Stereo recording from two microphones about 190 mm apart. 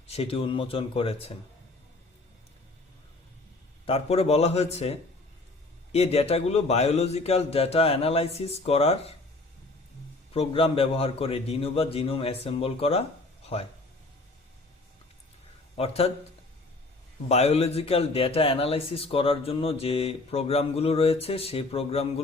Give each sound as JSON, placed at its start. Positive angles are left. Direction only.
{"t": 0.1, "sound": "speech", "side_deg": 30}
{"t": 3.8, "sound": "a man's voice", "side_deg": 35}
{"t": 10.3, "sound": "a man's voice", "side_deg": 30}
{"t": 15.8, "sound": "a man's voice", "side_deg": 30}
{"t": 17.2, "sound": "a man's voice", "side_deg": 35}